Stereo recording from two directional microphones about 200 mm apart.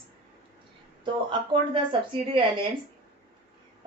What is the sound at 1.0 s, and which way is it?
A woman's voice, 25° right (ahead or behind).